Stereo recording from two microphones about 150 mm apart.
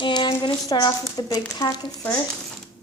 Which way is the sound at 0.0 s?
30° left (ahead or behind).